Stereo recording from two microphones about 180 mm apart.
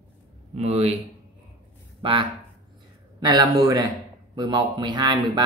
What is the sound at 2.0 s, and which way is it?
Speech, 30° right (ahead or behind).